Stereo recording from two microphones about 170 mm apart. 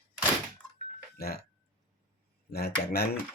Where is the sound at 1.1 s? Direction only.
65° left (ahead or behind).